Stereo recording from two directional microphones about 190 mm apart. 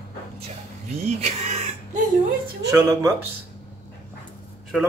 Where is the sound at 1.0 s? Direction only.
35° right (ahead or behind).